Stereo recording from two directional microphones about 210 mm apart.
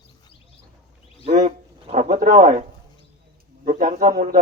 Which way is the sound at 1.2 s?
35° right (ahead or behind).